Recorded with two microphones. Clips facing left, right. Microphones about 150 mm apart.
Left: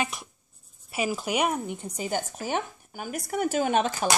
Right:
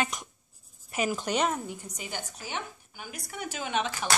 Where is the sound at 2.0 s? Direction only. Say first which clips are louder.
Left 13 dB; 45° left (ahead or behind).